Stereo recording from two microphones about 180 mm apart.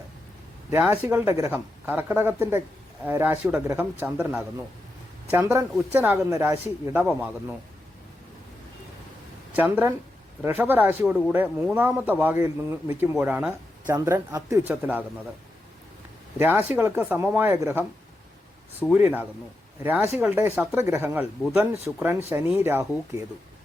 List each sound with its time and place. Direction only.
0.7 s speech: 15° right (ahead or behind)
9.6 s speech: 10° right (ahead or behind)
16.4 s speech: 10° right (ahead or behind)